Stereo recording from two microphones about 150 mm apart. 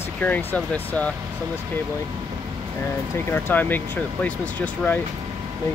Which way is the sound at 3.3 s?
15° left (ahead or behind).